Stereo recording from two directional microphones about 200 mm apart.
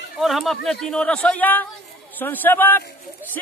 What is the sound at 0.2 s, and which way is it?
Speech, centre (ahead or behind).